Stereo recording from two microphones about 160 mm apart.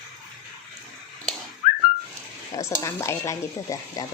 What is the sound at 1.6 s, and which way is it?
Whistling, 55° left (ahead or behind).